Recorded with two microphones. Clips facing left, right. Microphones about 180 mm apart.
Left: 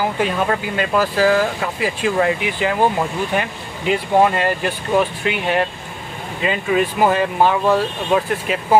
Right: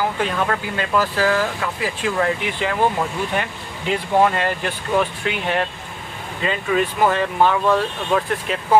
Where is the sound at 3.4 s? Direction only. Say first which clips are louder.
Left 2 dB; 10° left (ahead or behind).